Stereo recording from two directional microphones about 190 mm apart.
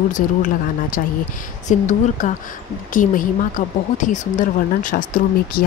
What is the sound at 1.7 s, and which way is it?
A woman's voice, 40° left (ahead or behind).